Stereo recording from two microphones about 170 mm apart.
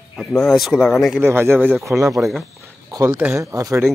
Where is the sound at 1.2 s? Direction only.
15° right (ahead or behind).